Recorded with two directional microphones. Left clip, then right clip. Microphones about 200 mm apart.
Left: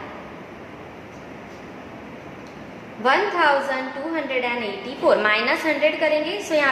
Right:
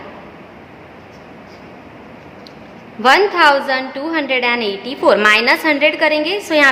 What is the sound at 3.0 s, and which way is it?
A woman's voice, 40° right (ahead or behind).